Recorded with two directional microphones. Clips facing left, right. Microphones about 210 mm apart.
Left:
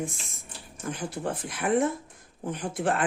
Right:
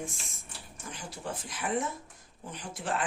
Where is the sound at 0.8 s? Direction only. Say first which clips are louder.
Left 10 dB; 55° left (ahead or behind).